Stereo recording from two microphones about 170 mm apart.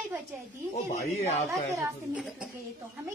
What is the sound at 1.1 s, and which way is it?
Speech, 40° left (ahead or behind).